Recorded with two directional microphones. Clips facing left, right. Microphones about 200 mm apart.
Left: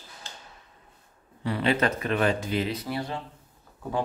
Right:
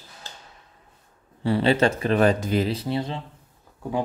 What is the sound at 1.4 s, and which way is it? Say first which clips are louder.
Speech: right 5 dB; 30° right (ahead or behind).